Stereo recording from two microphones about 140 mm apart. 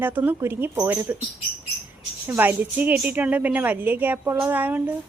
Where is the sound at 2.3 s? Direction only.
15° right (ahead or behind).